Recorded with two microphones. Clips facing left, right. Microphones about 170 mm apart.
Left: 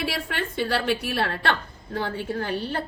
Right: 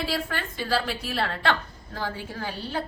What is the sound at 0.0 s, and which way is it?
A woman's voice, 70° left (ahead or behind).